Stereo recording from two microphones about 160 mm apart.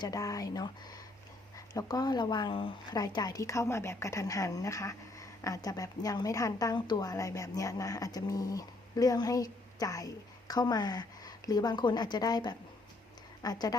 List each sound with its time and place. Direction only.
0.0 s speech: 20° left (ahead or behind)